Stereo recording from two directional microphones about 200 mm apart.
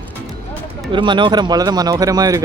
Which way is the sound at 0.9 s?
25° right (ahead or behind).